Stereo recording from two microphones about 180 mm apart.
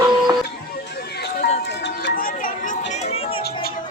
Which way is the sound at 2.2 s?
50° left (ahead or behind).